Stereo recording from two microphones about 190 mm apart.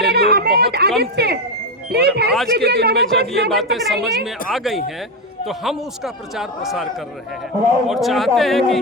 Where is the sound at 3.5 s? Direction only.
Centre (ahead or behind).